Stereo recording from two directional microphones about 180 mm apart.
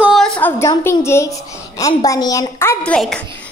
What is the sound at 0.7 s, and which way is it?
A woman's voice, 20° left (ahead or behind).